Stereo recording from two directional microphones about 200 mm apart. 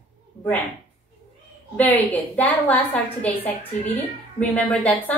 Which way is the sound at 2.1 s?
10° left (ahead or behind).